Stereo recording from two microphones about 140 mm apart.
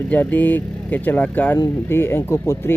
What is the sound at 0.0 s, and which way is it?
Speech, 10° left (ahead or behind).